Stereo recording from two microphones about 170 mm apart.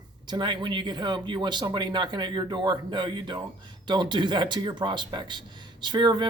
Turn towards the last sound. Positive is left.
turn(degrees=-25)  # may be behind; listen again after turning